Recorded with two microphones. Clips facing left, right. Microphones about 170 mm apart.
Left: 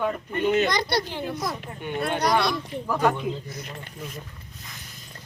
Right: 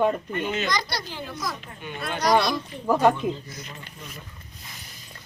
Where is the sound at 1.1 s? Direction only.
20° left (ahead or behind).